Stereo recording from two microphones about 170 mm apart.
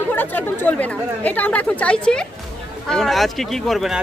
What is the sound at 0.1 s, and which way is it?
Speech, 10° left (ahead or behind).